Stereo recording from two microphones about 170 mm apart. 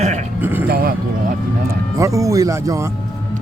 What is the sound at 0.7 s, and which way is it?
Speech, 60° right (ahead or behind).